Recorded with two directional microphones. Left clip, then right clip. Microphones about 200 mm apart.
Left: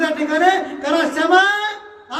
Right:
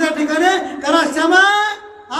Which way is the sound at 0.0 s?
10° right (ahead or behind).